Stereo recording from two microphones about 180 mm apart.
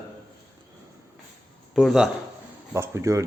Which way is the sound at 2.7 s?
15° right (ahead or behind).